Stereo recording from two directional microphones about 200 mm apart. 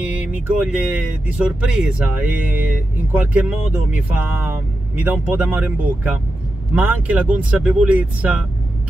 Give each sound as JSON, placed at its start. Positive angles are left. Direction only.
{"t": 0.0, "sound": "speech", "side_deg": -5}